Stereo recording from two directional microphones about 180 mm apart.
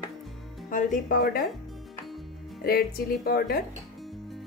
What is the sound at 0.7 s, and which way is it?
Speech, 45° left (ahead or behind).